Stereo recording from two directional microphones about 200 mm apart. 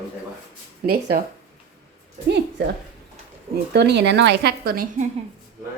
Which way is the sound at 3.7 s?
55° right (ahead or behind).